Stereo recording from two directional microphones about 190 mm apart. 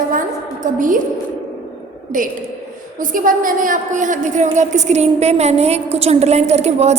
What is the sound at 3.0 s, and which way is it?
A woman's voice, 45° right (ahead or behind).